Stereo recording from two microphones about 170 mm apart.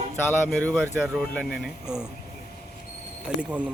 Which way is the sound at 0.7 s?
5° right (ahead or behind).